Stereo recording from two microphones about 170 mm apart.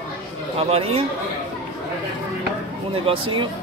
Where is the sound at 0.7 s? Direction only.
35° right (ahead or behind).